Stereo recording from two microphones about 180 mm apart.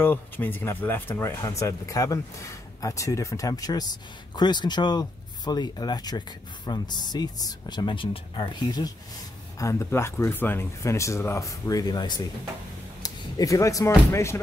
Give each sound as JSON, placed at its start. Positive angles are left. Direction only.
{"t": 0.0, "sound": "speech", "side_deg": 10}